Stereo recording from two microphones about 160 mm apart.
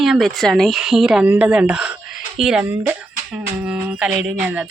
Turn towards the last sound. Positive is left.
turn(degrees=-10)  # may be behind; listen again after turning